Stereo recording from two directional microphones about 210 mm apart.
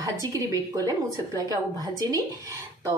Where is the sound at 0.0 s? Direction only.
15° right (ahead or behind).